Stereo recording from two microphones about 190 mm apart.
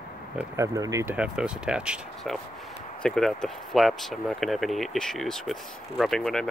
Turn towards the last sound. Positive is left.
turn(degrees=5)  # may be behind; listen again after turning